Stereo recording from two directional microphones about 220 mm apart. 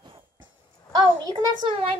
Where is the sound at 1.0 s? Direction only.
15° right (ahead or behind).